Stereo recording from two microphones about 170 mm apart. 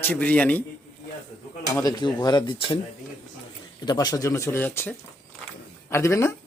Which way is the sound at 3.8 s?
20° left (ahead or behind).